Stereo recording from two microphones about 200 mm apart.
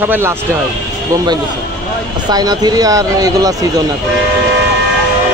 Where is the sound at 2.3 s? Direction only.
20° right (ahead or behind).